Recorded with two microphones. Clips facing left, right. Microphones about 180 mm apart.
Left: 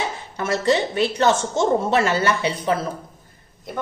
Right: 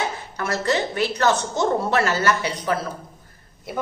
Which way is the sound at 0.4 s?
20° left (ahead or behind).